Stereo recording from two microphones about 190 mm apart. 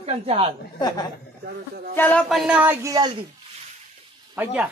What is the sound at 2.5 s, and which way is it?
Speech, 10° right (ahead or behind).